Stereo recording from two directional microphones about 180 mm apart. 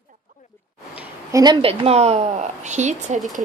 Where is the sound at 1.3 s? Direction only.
20° right (ahead or behind).